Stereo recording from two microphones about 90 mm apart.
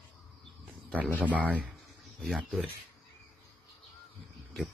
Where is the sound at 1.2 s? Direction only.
15° right (ahead or behind).